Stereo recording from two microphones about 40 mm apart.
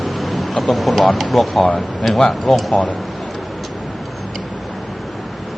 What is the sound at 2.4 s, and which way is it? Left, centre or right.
Speech, centre.